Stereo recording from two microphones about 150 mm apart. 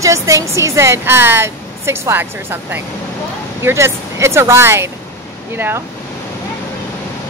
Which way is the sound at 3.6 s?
15° right (ahead or behind).